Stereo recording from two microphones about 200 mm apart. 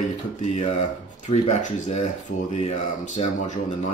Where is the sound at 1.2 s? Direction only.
35° left (ahead or behind).